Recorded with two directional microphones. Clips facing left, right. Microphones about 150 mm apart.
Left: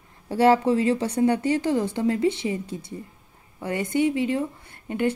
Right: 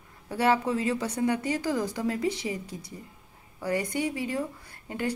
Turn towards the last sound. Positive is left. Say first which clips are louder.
# left 6 dB
turn(degrees=25)  # may be behind; listen again after turning